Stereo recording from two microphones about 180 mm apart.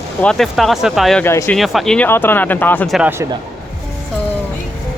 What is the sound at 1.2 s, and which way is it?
Speech, 10° left (ahead or behind).